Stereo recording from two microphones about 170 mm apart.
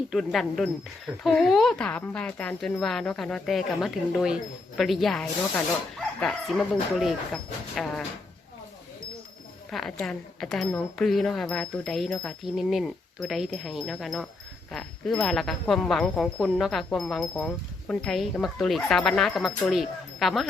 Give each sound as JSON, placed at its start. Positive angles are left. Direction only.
{"t": 0.1, "sound": "speech", "side_deg": 0}
{"t": 9.6, "sound": "speech", "side_deg": 0}